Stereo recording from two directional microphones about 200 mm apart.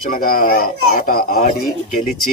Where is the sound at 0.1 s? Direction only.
45° left (ahead or behind).